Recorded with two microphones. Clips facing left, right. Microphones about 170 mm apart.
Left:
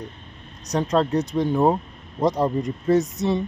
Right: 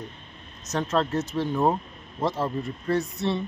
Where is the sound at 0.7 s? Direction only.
15° left (ahead or behind).